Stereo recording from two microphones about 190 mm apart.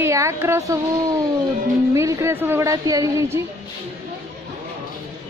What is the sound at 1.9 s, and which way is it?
A woman's voice, 15° right (ahead or behind).